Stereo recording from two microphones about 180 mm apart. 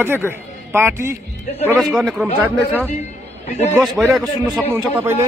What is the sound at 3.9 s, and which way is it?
Speech, 5° right (ahead or behind).